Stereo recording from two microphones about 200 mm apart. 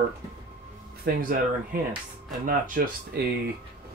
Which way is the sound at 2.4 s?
45° right (ahead or behind).